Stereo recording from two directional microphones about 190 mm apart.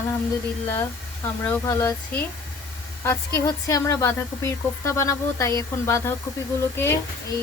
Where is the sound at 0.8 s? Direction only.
10° left (ahead or behind).